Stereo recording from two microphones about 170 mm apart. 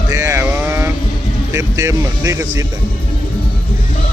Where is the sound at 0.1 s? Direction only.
20° right (ahead or behind).